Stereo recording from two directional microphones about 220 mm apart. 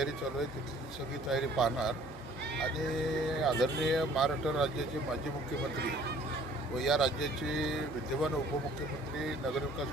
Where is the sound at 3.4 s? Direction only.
Centre (ahead or behind).